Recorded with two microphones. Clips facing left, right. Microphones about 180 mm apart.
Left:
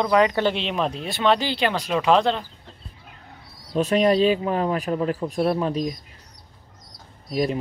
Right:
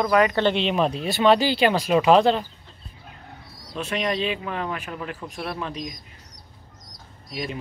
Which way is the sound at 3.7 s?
35° left (ahead or behind).